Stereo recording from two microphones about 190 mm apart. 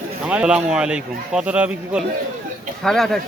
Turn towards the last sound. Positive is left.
turn(degrees=0)  # may be behind; listen again after turning